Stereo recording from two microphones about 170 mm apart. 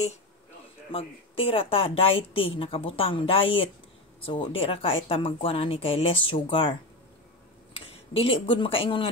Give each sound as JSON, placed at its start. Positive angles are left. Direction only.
{"t": 0.9, "sound": "a woman's voice", "side_deg": 35}
{"t": 7.8, "sound": "speech", "side_deg": 35}